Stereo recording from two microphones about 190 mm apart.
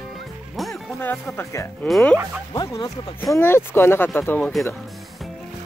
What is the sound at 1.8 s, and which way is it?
Speech, centre (ahead or behind).